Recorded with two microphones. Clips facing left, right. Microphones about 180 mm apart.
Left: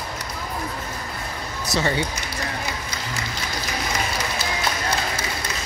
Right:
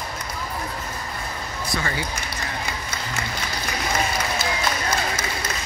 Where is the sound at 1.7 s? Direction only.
25° left (ahead or behind).